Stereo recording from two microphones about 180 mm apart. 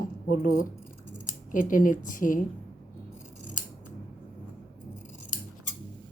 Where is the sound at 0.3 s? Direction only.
50° left (ahead or behind).